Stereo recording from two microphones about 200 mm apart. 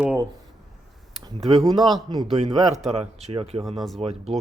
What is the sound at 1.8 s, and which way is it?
Speech, centre (ahead or behind).